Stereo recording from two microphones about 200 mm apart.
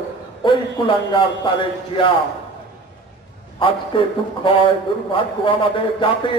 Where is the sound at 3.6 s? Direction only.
25° left (ahead or behind).